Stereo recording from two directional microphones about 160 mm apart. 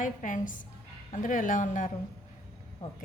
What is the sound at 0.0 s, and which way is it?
A woman's voice, 55° left (ahead or behind).